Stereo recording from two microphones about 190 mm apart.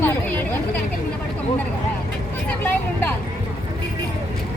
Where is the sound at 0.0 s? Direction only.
10° left (ahead or behind).